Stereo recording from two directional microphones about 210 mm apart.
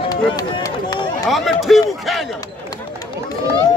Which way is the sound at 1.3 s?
Centre (ahead or behind).